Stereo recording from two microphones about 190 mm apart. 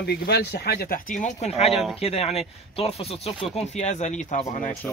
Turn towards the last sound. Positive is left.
turn(degrees=40)  # may be behind; listen again after turning